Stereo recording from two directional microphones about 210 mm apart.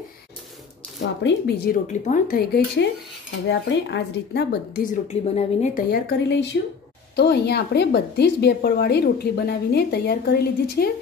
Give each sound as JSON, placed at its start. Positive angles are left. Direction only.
{"t": 1.2, "sound": "a woman's voice", "side_deg": 50}
{"t": 1.9, "sound": "a woman's voice", "side_deg": 35}
{"t": 5.0, "sound": "a woman's voice", "side_deg": 30}